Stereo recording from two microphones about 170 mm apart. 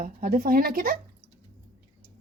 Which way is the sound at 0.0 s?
55° right (ahead or behind).